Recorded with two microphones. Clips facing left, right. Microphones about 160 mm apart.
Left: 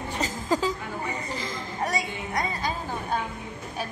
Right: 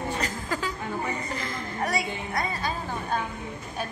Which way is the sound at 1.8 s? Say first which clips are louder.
Right 1 dB; 15° left (ahead or behind).